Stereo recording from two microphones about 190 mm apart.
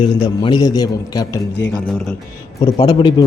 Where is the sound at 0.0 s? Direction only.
25° left (ahead or behind).